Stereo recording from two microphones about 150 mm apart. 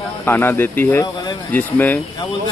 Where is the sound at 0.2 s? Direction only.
15° left (ahead or behind).